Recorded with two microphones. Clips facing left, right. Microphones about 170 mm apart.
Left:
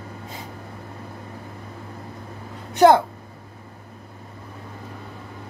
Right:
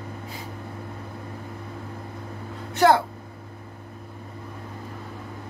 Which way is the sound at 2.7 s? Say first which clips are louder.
Left 4 dB; 20° left (ahead or behind).